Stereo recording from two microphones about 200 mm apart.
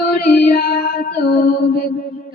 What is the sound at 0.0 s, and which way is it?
Music, 50° left (ahead or behind).